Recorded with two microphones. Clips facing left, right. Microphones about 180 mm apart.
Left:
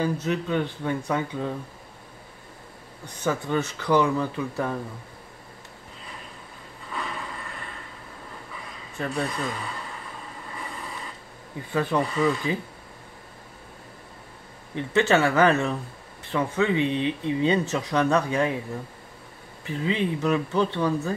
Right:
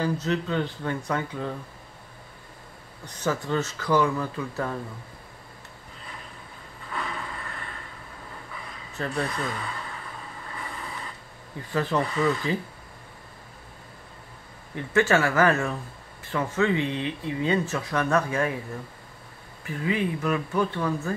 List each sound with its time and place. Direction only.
0.0 s speech: 15° left (ahead or behind)
3.3 s speech: 15° left (ahead or behind)
6.9 s a sound: centre (ahead or behind)
8.9 s speech: 10° left (ahead or behind)
11.7 s speech: 10° left (ahead or behind)
14.8 s speech: 20° left (ahead or behind)
19.6 s speech: 25° left (ahead or behind)